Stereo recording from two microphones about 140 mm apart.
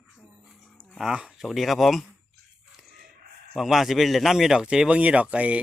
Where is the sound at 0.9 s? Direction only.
5° right (ahead or behind).